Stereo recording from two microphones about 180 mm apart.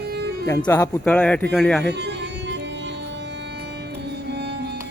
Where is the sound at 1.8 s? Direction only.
70° right (ahead or behind).